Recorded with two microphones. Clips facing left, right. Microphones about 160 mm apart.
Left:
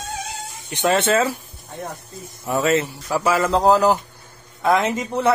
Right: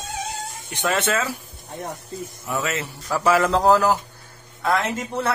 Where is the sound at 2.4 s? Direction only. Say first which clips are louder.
Left 8 dB; 30° left (ahead or behind).